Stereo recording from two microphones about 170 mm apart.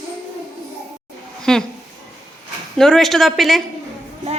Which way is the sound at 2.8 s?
5° left (ahead or behind).